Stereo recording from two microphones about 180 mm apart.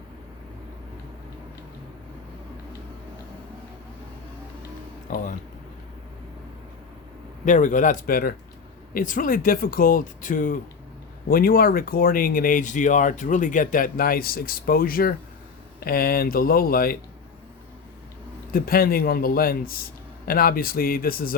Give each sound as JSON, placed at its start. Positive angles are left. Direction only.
{"t": 5.1, "sound": "speech", "side_deg": 45}
{"t": 7.4, "sound": "a man's voice", "side_deg": 45}
{"t": 18.5, "sound": "a man's voice", "side_deg": 55}